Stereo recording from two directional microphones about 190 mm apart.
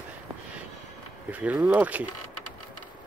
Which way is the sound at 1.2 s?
10° right (ahead or behind).